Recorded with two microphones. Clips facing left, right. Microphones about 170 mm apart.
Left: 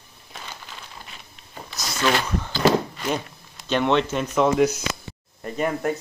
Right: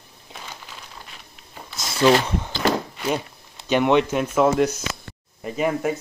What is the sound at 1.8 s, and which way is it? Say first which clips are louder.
Speech: right 6 dB; 25° right (ahead or behind).